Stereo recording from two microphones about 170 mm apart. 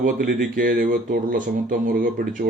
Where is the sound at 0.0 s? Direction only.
55° right (ahead or behind).